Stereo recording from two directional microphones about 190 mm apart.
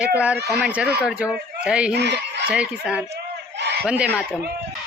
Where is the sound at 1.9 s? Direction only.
65° right (ahead or behind).